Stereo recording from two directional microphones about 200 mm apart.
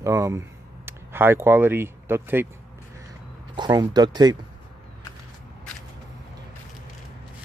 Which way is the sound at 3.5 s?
20° right (ahead or behind).